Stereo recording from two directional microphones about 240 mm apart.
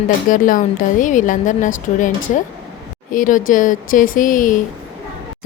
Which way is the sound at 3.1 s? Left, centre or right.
Left.